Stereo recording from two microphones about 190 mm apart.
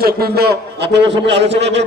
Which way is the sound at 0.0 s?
55° right (ahead or behind).